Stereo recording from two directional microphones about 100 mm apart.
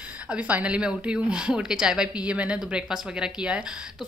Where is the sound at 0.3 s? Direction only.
15° right (ahead or behind).